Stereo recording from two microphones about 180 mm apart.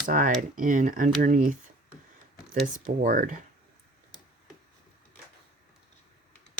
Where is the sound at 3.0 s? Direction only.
45° right (ahead or behind).